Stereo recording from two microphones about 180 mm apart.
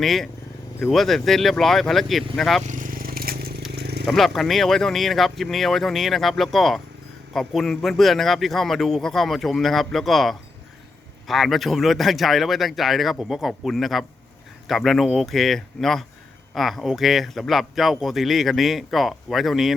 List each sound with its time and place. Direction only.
0.0 s speech: centre (ahead or behind)
2.6 s crushing: 45° right (ahead or behind)
3.7 s a sound: 65° right (ahead or behind)
4.0 s speech: centre (ahead or behind)